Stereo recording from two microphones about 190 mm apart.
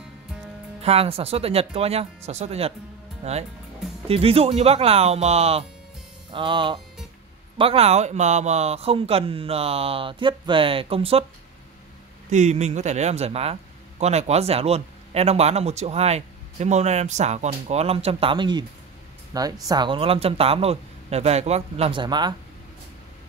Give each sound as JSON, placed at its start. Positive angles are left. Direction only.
{"t": 0.8, "sound": "speech", "side_deg": -30}
{"t": 12.3, "sound": "speech", "side_deg": -40}